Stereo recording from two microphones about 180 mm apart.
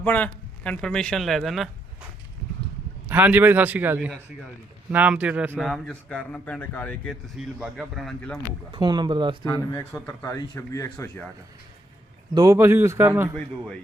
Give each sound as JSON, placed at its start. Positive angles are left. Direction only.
{"t": 0.0, "sound": "a man's voice", "side_deg": 10}
{"t": 3.1, "sound": "a man's voice", "side_deg": -10}
{"t": 8.7, "sound": "speech", "side_deg": -25}
{"t": 9.4, "sound": "speech", "side_deg": 15}
{"t": 12.3, "sound": "speech", "side_deg": -20}